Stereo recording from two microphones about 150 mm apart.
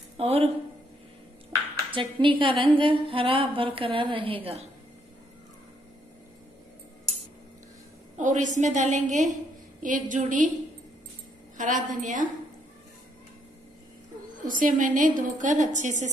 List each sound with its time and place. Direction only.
0.2 s a woman's voice: 40° right (ahead or behind)
1.9 s a woman's voice: 35° right (ahead or behind)
8.2 s a woman's voice: 55° right (ahead or behind)
11.5 s a woman's voice: 60° right (ahead or behind)
14.4 s a woman's voice: 65° right (ahead or behind)